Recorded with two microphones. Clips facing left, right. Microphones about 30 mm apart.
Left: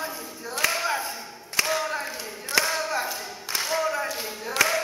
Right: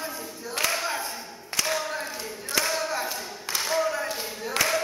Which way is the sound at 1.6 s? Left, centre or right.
Centre.